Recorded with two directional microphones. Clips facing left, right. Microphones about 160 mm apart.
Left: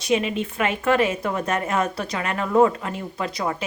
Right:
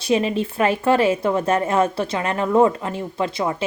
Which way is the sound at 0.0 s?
35° right (ahead or behind).